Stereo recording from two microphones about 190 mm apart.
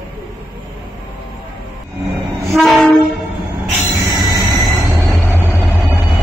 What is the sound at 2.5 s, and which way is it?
Train, centre (ahead or behind).